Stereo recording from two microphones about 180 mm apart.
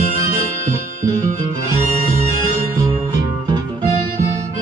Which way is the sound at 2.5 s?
20° right (ahead or behind).